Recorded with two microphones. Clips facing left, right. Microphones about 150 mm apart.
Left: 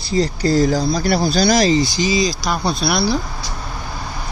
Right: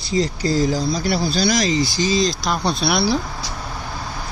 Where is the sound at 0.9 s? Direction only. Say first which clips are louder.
Left 3 dB; 40° left (ahead or behind).